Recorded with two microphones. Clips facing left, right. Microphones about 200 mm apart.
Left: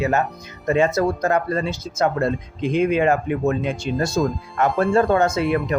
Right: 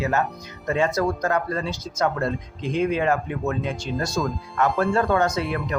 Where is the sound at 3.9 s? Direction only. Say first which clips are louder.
Left 5 dB; 75° left (ahead or behind).